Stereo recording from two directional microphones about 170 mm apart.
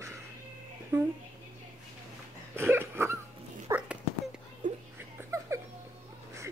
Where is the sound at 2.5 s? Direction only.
15° right (ahead or behind).